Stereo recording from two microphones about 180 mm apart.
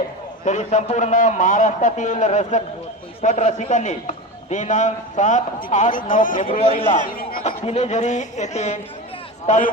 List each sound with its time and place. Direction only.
0.4 s a man's voice: 40° left (ahead or behind)
7.4 s a man's voice: 35° left (ahead or behind)